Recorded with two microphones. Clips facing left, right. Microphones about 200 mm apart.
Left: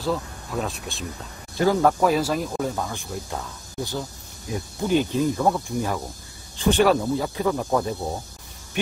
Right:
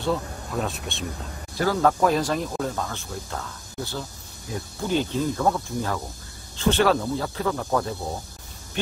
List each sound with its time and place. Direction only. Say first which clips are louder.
0.0 s speech: even; centre (ahead or behind)
1.6 s speech: left 3 dB; 15° left (ahead or behind)
1.9 s speech: left 1 dB; 5° left (ahead or behind)